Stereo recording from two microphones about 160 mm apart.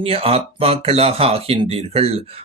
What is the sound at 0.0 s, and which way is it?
Speech, 35° right (ahead or behind).